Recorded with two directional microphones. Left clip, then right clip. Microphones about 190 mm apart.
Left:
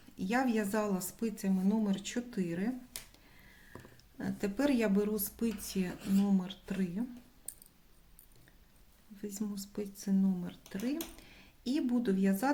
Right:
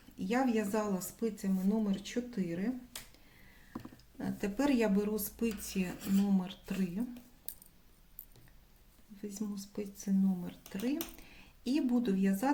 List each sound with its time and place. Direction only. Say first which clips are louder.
0.2 s speech: even; 15° left (ahead or behind)
4.2 s speech: left 1 dB; 10° left (ahead or behind)
9.2 s speech: left 1 dB; 20° left (ahead or behind)